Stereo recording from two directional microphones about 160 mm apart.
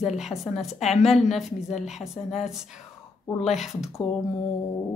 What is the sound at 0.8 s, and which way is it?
Speech, 40° left (ahead or behind).